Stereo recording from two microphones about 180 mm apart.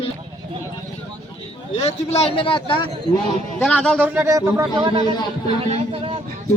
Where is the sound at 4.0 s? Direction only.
10° right (ahead or behind).